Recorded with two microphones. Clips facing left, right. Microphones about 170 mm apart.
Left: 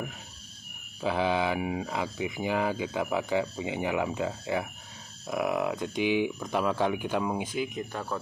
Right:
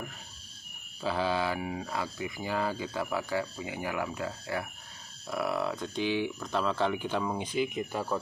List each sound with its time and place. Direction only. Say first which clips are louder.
1.0 s speech: left 3 dB; 15° left (ahead or behind)
7.5 s speech: right 2 dB; centre (ahead or behind)